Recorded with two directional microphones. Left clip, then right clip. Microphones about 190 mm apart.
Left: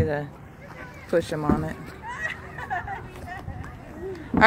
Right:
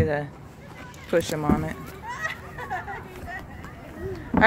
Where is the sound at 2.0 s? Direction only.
50° left (ahead or behind).